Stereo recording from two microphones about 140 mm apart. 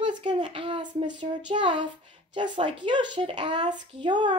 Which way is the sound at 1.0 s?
35° right (ahead or behind).